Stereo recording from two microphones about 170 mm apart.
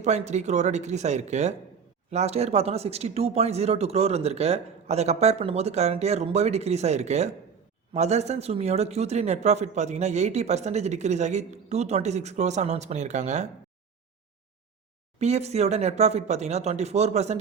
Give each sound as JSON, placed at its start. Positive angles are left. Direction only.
{"t": 0.0, "sound": "speech", "side_deg": -40}
{"t": 15.2, "sound": "speech", "side_deg": -40}